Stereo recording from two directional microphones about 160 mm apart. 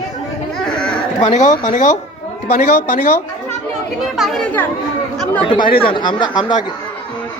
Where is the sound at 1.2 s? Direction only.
45° left (ahead or behind).